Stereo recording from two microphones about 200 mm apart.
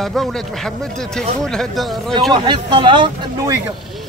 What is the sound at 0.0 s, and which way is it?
Speech, centre (ahead or behind).